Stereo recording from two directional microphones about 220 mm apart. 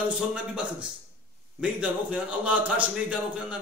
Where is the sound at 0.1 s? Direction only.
5° right (ahead or behind).